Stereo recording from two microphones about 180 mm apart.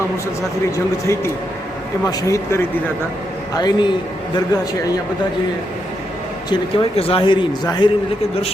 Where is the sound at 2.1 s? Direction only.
15° left (ahead or behind).